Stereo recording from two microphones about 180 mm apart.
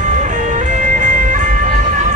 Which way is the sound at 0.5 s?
45° right (ahead or behind).